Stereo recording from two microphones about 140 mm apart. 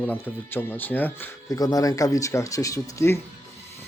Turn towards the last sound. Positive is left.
turn(degrees=20)  # may be behind; listen again after turning